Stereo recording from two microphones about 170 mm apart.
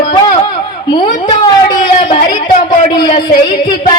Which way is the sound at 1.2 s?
25° left (ahead or behind).